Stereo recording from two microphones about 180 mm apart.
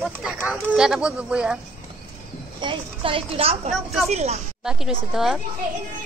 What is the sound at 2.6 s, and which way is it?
Speech, 30° right (ahead or behind).